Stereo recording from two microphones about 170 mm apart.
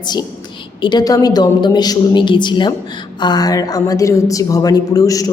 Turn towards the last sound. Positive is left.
turn(degrees=20)  # may be behind; listen again after turning